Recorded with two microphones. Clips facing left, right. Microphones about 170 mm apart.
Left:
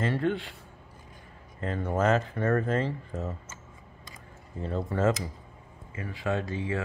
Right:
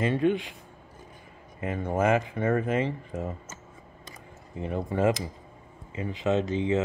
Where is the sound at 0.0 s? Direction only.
15° right (ahead or behind).